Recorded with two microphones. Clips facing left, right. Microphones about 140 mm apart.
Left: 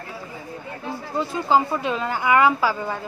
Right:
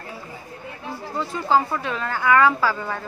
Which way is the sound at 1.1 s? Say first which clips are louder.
Left 1 dB; 20° left (ahead or behind).